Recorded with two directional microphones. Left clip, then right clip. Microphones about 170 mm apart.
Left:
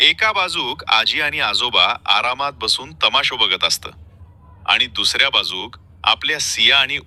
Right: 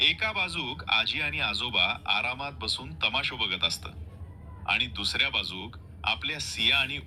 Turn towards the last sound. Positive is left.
turn(degrees=25)  # may be behind; listen again after turning